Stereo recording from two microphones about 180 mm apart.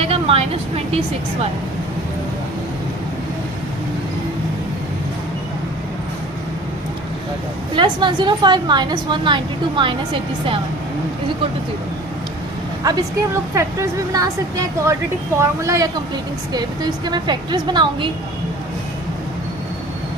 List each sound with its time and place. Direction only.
0.0 s vehicle: 30° right (ahead or behind)
7.8 s a woman's voice: 25° right (ahead or behind)
12.8 s a woman's voice: 20° right (ahead or behind)